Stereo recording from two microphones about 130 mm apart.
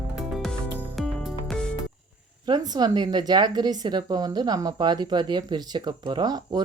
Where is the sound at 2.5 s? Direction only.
35° right (ahead or behind).